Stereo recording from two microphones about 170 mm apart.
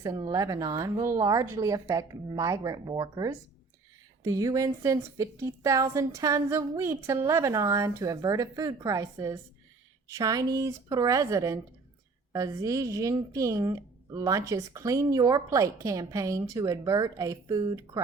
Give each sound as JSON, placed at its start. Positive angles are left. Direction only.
{"t": 0.0, "sound": "a woman's voice", "side_deg": -25}